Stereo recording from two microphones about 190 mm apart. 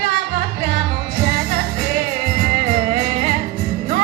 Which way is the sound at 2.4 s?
50° right (ahead or behind).